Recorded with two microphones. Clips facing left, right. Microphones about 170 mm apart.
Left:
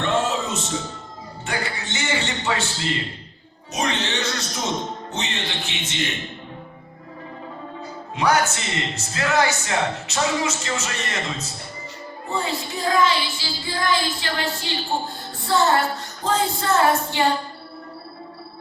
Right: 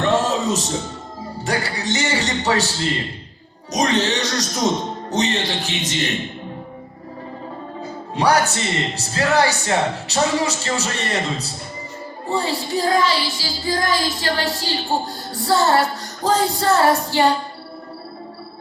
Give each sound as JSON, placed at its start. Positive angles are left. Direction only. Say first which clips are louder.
{"t": 0.0, "sound": "music", "louder": "right 4 dB", "side_deg": -40}
{"t": 3.7, "sound": "music", "louder": "right 6 dB", "side_deg": -40}
{"t": 8.1, "sound": "speech", "louder": "right 3 dB", "side_deg": -35}
{"t": 9.0, "sound": "music", "louder": "right 3 dB", "side_deg": -35}